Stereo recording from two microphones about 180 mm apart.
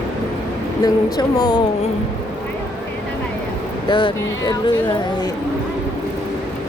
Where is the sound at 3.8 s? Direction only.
25° left (ahead or behind).